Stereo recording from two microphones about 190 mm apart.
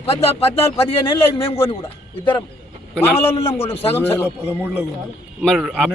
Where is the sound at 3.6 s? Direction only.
30° left (ahead or behind).